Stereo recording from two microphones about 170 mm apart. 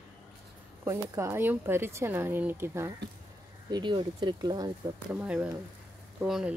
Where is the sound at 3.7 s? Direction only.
25° right (ahead or behind).